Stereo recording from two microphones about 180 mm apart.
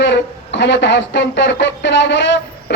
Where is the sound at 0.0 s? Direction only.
80° left.